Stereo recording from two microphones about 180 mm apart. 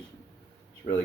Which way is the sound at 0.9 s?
50° left (ahead or behind).